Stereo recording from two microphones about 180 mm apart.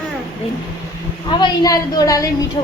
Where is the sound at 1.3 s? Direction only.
25° left (ahead or behind).